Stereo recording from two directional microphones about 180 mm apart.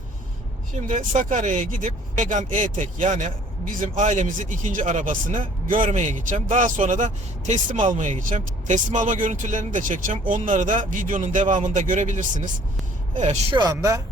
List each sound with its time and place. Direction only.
0.8 s speech: 45° right (ahead or behind)
13.6 s speech: 20° right (ahead or behind)